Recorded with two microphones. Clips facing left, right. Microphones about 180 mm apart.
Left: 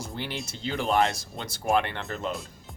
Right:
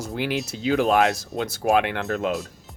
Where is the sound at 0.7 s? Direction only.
85° right.